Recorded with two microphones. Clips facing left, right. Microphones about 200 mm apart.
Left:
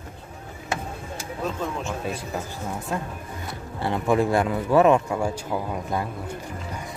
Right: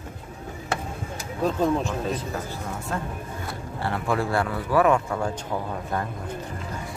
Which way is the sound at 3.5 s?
20° left (ahead or behind).